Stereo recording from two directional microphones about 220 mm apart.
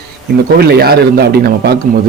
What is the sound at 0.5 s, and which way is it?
A man's voice, 45° right (ahead or behind).